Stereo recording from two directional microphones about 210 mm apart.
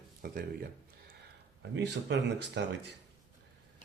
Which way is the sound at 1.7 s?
55° right (ahead or behind).